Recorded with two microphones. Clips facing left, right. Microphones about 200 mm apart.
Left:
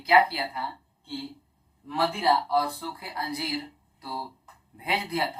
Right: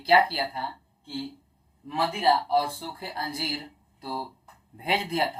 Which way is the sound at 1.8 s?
25° right (ahead or behind).